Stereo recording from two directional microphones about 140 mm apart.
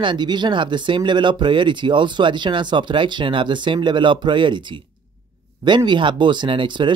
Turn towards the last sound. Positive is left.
turn(degrees=-35)  # may be behind; listen again after turning